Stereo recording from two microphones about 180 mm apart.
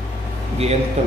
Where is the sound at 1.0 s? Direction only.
35° right (ahead or behind).